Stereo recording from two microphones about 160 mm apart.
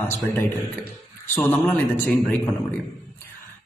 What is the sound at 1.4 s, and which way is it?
Speech, 10° left (ahead or behind).